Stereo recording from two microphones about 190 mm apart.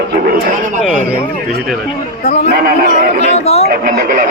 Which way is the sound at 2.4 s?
50° right (ahead or behind).